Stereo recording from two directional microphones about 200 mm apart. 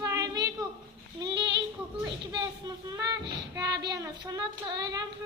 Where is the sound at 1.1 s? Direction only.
20° right (ahead or behind).